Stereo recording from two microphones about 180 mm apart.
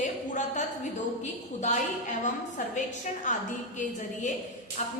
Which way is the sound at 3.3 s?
45° left (ahead or behind).